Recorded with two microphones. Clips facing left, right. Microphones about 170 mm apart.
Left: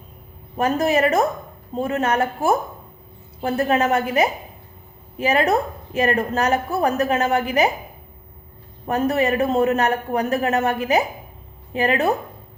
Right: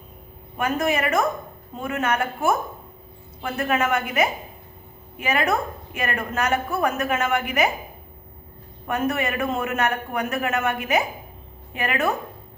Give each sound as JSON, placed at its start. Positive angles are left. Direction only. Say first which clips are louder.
{"t": 0.5, "sound": "a woman's voice", "louder": "left 4 dB", "side_deg": 35}
{"t": 8.9, "sound": "a woman's voice", "louder": "left 5 dB", "side_deg": 35}